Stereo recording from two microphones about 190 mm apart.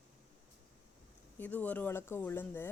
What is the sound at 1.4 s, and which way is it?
Speech, 10° left (ahead or behind).